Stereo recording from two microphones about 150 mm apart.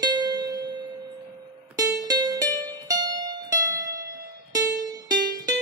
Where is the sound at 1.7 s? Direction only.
25° right (ahead or behind).